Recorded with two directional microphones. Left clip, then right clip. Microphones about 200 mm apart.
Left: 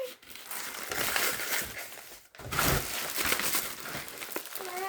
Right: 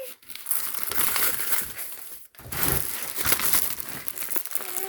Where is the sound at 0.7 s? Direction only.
45° right (ahead or behind).